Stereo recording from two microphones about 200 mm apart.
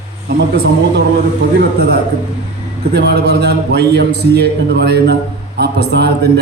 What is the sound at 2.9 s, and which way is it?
A man's voice, 55° right (ahead or behind).